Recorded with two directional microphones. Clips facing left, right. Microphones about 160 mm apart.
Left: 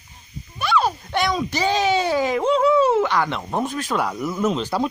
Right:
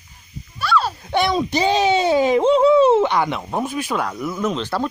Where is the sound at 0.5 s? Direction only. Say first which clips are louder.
Even; 15° left (ahead or behind).